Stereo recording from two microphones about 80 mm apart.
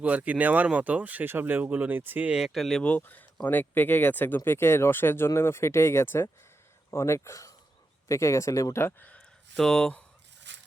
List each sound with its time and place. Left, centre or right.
0.0 s speech: centre
2.3 s speech: centre
2.8 s speech: left
9.0 s a sound: centre
9.6 s speech: centre